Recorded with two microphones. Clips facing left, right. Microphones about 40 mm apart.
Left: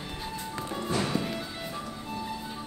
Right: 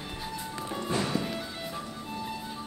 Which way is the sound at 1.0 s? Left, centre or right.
Centre.